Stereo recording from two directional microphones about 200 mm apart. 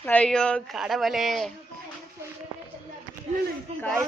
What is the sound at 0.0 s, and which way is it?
A woman's voice, 5° left (ahead or behind).